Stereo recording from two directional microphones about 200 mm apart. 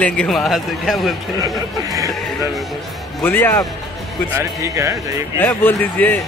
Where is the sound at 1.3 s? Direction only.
15° right (ahead or behind).